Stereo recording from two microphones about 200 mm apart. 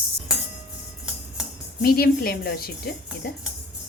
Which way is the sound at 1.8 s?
50° left (ahead or behind).